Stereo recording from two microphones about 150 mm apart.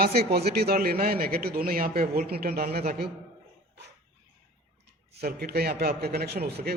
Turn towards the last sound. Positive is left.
turn(degrees=-90)